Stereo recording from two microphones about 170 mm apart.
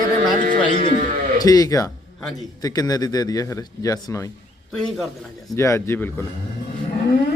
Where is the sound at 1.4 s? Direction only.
20° left (ahead or behind).